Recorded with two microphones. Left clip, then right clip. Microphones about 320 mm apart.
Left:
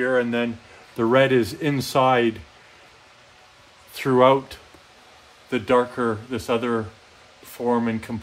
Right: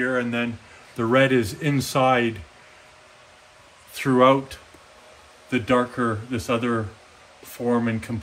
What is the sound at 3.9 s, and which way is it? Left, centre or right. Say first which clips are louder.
Speech: left 1 dB; left.